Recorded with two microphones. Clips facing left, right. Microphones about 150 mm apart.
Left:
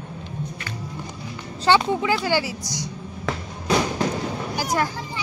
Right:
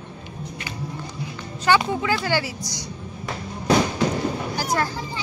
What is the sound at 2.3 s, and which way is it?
Speech, 15° left (ahead or behind).